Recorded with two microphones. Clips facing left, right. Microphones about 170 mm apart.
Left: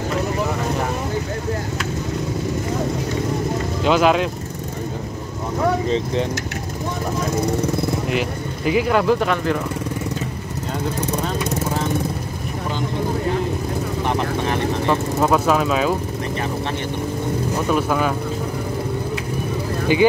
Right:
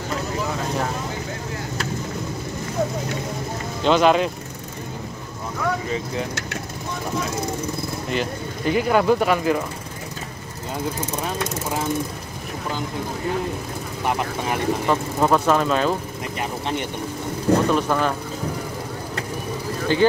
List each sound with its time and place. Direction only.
3.8 s speech: 5° left (ahead or behind)
8.1 s speech: 5° left (ahead or behind)
14.0 s speech: 5° right (ahead or behind)
17.6 s speech: 5° left (ahead or behind)
19.9 s speech: 15° left (ahead or behind)